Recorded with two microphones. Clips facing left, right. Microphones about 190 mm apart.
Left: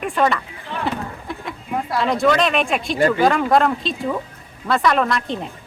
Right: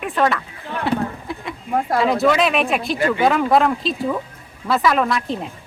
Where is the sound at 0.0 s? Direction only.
Centre (ahead or behind).